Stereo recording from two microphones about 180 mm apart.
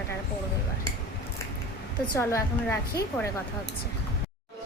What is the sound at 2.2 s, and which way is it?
Speech, 15° left (ahead or behind).